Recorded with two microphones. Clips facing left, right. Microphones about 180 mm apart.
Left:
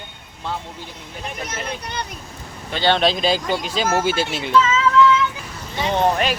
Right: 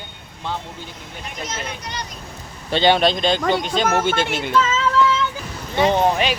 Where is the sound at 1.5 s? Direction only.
55° left (ahead or behind).